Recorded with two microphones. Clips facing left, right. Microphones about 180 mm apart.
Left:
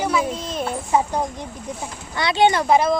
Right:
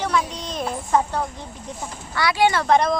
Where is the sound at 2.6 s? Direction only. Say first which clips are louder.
Left 1 dB; 5° left (ahead or behind).